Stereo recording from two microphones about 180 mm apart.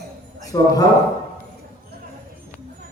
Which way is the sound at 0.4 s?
20° left (ahead or behind).